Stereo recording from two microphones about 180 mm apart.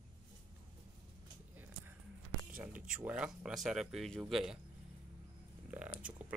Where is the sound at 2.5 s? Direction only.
50° right (ahead or behind).